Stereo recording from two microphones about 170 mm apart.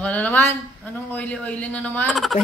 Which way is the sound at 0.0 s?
10° left (ahead or behind).